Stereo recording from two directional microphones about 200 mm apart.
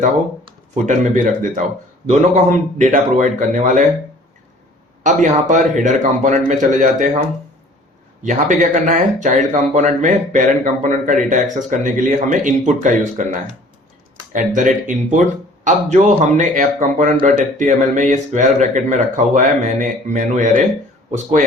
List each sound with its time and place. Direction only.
0.9 s speech: 40° right (ahead or behind)
5.0 s speech: 40° right (ahead or behind)
8.2 s speech: 40° right (ahead or behind)